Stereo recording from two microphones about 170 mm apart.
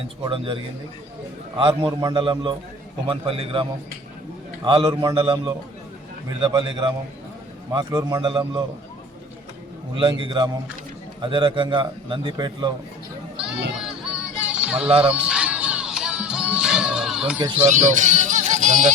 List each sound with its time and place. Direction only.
0.3 s a man's voice: 30° right (ahead or behind)
4.9 s a man's voice: 15° right (ahead or behind)
6.4 s a man's voice: 30° right (ahead or behind)
10.0 s a man's voice: 30° right (ahead or behind)
13.7 s music: 5° right (ahead or behind)
14.8 s a man's voice: 35° right (ahead or behind)
15.1 s music: 5° right (ahead or behind)
17.7 s speech: 45° right (ahead or behind)